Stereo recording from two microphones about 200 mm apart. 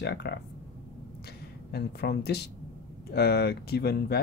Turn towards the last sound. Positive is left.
turn(degrees=55)  # may be behind; listen again after turning